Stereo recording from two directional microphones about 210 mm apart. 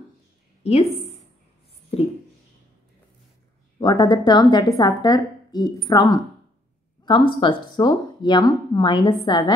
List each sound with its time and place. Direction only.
0.7 s a woman's voice: 30° left (ahead or behind)
1.9 s a sound: 30° left (ahead or behind)
3.8 s a woman's voice: 20° left (ahead or behind)